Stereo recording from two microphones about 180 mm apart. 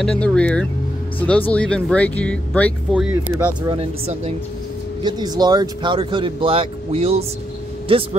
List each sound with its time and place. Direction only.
0.2 s speech: 5° left (ahead or behind)
2.9 s speech: 5° right (ahead or behind)
3.6 s speech: 30° right (ahead or behind)
5.0 s speech: 20° right (ahead or behind)